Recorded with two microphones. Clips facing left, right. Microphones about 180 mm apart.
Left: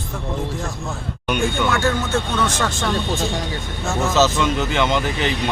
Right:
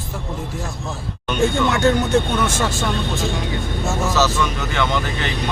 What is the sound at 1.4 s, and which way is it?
Speech, 20° right (ahead or behind).